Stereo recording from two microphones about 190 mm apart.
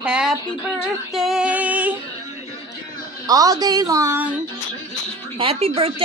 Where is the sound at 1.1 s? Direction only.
Centre (ahead or behind).